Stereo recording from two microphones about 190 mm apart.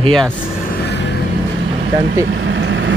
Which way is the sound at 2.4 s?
75° right (ahead or behind).